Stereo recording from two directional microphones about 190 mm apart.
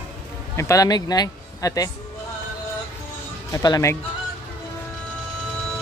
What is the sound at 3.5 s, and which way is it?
Speech, 20° left (ahead or behind).